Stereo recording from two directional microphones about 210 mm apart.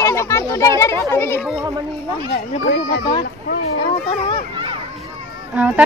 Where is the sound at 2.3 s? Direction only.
50° left (ahead or behind).